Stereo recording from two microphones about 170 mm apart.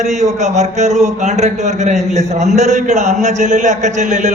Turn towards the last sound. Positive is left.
turn(degrees=-45)  # may be behind; listen again after turning